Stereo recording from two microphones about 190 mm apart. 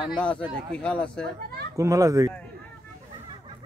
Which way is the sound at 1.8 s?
15° right (ahead or behind).